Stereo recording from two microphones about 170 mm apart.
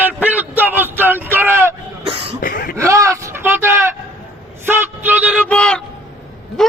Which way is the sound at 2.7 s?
15° right (ahead or behind).